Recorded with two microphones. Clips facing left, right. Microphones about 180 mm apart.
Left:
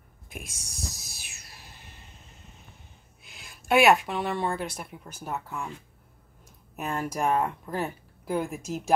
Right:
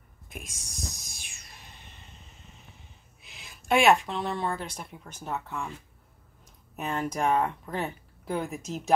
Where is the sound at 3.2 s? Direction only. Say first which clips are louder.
Even; centre (ahead or behind).